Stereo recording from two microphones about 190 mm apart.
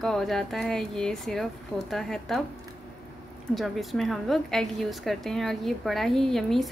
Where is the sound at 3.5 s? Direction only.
Centre (ahead or behind).